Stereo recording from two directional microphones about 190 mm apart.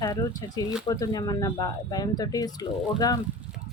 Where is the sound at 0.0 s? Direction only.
20° left (ahead or behind).